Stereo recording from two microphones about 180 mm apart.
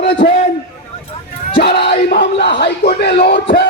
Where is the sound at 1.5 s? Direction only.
65° left (ahead or behind).